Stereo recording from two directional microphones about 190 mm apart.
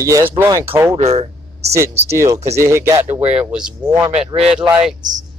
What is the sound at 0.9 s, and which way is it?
Speech, 35° right (ahead or behind).